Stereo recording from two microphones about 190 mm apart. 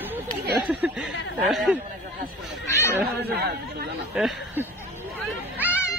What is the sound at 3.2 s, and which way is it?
Speech, 55° right (ahead or behind).